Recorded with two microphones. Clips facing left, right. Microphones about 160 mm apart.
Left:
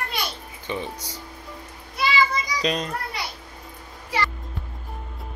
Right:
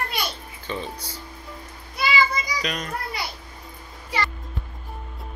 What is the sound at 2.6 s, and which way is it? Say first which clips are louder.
Speech: left 5 dB; 30° left (ahead or behind).